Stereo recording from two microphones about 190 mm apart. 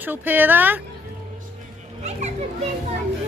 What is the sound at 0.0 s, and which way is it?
Speech, 10° right (ahead or behind).